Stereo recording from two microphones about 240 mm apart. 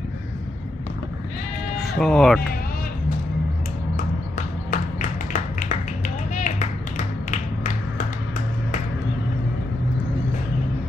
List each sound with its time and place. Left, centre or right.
1.8 s speech: centre
4.6 s music: left